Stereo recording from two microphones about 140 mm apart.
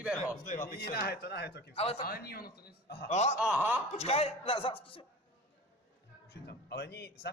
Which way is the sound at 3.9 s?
45° left (ahead or behind).